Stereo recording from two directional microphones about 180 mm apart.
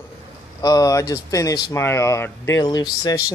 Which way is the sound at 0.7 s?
20° left (ahead or behind).